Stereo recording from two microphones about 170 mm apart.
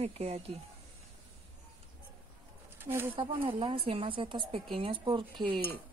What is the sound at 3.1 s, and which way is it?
Speech, 30° right (ahead or behind).